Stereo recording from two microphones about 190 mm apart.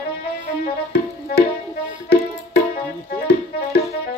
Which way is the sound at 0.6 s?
55° left (ahead or behind).